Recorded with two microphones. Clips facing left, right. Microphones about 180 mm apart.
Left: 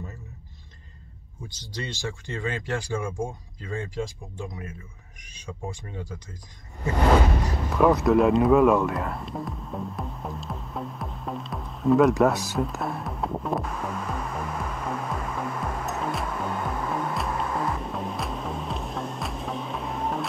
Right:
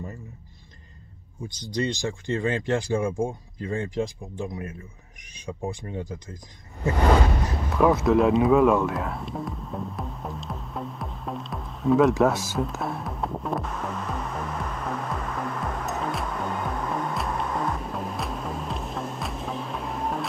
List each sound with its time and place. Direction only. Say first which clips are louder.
1.5 s speech: right 9 dB; 15° right (ahead or behind)
5.5 s speech: right 4 dB; 15° right (ahead or behind)
7.7 s music: even; centre (ahead or behind)